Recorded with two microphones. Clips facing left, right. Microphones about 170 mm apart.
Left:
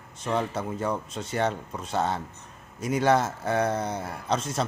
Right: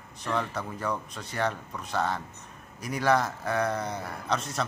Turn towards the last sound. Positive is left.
turn(degrees=30)  # may be behind; listen again after turning